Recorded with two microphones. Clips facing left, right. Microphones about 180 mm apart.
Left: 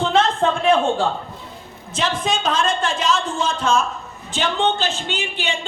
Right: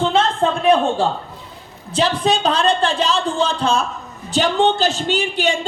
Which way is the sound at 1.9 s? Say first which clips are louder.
Right 5 dB; 35° right (ahead or behind).